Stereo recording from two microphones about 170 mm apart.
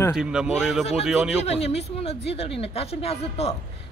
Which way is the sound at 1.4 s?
40° left (ahead or behind).